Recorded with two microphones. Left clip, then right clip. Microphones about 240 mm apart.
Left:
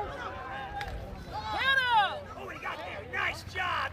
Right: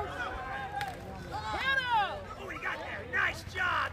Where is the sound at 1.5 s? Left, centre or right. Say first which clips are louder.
Left 4 dB; left.